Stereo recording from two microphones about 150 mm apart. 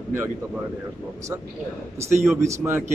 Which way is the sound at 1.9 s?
15° right (ahead or behind).